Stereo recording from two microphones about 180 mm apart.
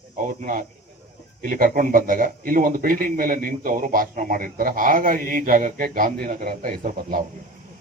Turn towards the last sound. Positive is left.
turn(degrees=-50)  # may be behind; listen again after turning